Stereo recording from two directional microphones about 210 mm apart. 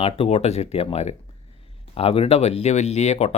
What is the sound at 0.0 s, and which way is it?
Speech, 30° left (ahead or behind).